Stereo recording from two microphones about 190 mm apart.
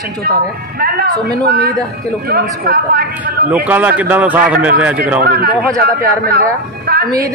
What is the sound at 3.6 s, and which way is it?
Speech, 10° right (ahead or behind).